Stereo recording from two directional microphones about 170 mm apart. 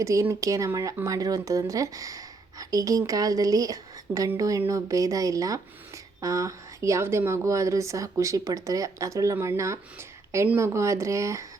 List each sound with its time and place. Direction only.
0.0 s speech: 15° right (ahead or behind)